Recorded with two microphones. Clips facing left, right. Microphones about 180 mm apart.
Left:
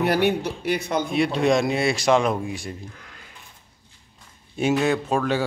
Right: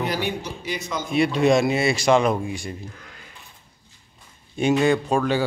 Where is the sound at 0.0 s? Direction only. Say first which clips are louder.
Left 5 dB; 65° left (ahead or behind).